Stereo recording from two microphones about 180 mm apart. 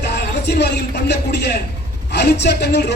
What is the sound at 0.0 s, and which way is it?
A man's voice, 65° left (ahead or behind).